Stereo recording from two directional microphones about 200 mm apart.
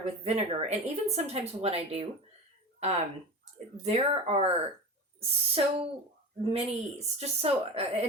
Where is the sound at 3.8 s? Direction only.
30° right (ahead or behind).